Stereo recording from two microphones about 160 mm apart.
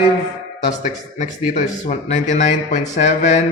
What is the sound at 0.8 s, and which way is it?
Speech, 50° left (ahead or behind).